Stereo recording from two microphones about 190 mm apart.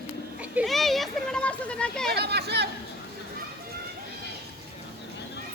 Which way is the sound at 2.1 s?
60° right (ahead or behind).